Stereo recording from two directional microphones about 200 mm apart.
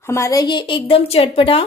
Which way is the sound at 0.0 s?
15° left (ahead or behind).